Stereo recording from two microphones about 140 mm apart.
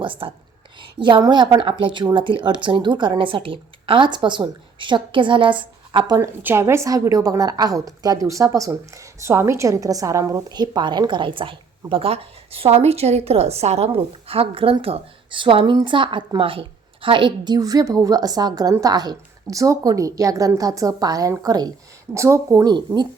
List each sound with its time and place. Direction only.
0.0 s a woman's voice: 40° right (ahead or behind)
6.1 s a woman's voice: 20° right (ahead or behind)